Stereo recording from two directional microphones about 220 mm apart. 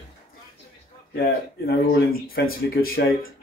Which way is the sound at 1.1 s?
45° left (ahead or behind).